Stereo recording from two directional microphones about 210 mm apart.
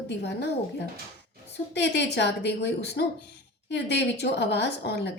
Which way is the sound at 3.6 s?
55° left (ahead or behind).